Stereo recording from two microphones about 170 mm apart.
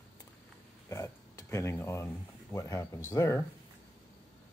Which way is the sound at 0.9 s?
15° left (ahead or behind).